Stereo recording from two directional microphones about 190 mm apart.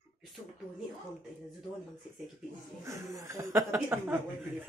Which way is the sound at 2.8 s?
15° right (ahead or behind).